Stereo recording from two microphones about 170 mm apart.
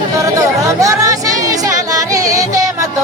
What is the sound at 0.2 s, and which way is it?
Music, 20° right (ahead or behind).